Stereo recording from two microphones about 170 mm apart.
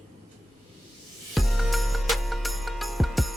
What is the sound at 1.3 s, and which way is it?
Music, centre (ahead or behind).